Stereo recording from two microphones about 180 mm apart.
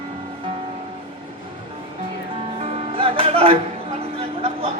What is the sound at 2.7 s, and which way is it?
Music, 30° right (ahead or behind).